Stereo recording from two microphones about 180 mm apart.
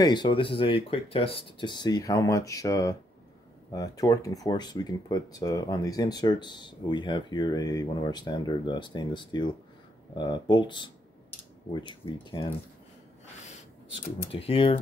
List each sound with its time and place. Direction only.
0.0 s speech: 25° left (ahead or behind)
14.3 s speech: 30° left (ahead or behind)